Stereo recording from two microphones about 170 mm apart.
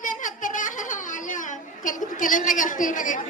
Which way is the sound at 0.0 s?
50° left (ahead or behind).